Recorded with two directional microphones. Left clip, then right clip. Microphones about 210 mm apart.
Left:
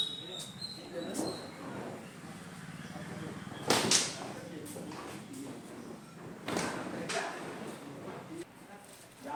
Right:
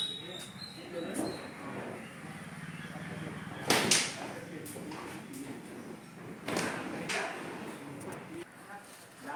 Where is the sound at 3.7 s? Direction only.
30° right (ahead or behind).